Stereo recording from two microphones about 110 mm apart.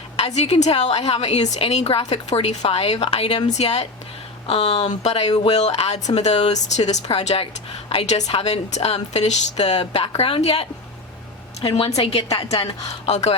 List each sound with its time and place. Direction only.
0.2 s a woman's voice: 75° left (ahead or behind)
3.5 s a woman's voice: 75° left (ahead or behind)
4.4 s a woman's voice: 65° left (ahead or behind)
11.6 s a woman's voice: 45° left (ahead or behind)
12.1 s a woman's voice: 65° left (ahead or behind)
12.9 s speech: 90° left